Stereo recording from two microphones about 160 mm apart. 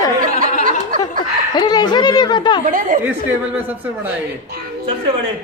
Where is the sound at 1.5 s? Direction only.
25° left (ahead or behind).